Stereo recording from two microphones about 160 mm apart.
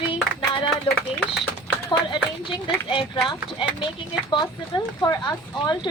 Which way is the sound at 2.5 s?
30° left (ahead or behind).